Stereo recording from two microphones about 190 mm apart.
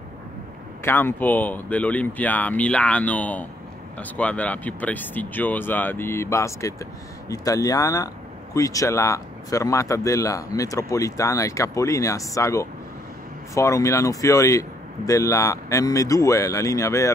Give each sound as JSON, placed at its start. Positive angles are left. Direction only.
{"t": 0.8, "sound": "speech", "side_deg": 10}